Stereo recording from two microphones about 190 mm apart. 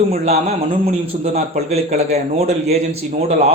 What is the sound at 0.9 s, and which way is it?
A man's voice, 35° right (ahead or behind).